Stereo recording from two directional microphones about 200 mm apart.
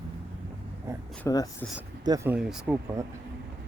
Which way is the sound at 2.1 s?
10° right (ahead or behind).